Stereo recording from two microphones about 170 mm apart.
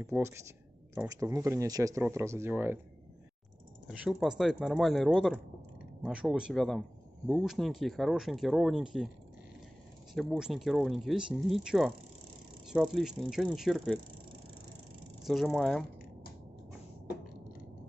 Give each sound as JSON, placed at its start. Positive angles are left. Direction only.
{"t": 0.0, "sound": "speech", "side_deg": -15}
{"t": 3.8, "sound": "speech", "side_deg": -5}
{"t": 10.1, "sound": "speech", "side_deg": 0}
{"t": 15.2, "sound": "speech", "side_deg": 0}